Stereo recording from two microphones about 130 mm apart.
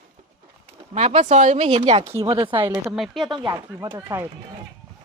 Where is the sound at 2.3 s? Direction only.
40° right (ahead or behind).